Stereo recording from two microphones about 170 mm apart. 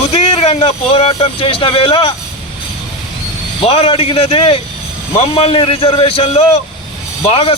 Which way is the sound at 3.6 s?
35° left (ahead or behind).